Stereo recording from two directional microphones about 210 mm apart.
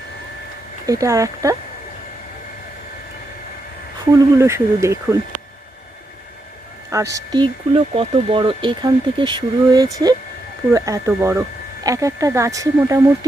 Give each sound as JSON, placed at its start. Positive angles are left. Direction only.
{"t": 0.9, "sound": "speech", "side_deg": -15}
{"t": 4.1, "sound": "speech", "side_deg": -15}
{"t": 6.9, "sound": "speech", "side_deg": -15}